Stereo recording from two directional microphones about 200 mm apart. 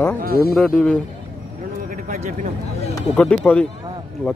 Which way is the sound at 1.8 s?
40° right (ahead or behind).